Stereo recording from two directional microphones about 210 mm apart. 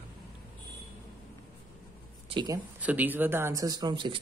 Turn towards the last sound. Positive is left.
turn(degrees=-20)  # may be behind; listen again after turning